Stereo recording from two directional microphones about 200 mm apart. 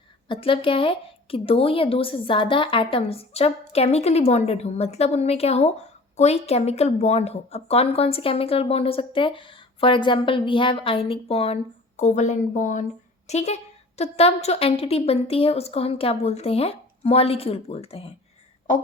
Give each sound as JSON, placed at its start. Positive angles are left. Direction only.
{"t": 0.3, "sound": "a woman's voice", "side_deg": 25}